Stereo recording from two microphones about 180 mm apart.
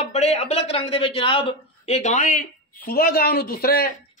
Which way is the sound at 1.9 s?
40° left (ahead or behind).